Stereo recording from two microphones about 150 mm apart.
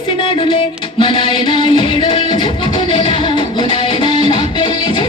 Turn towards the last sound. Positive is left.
turn(degrees=30)  # may be behind; listen again after turning